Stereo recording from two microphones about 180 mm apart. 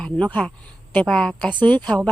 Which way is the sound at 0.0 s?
5° left (ahead or behind).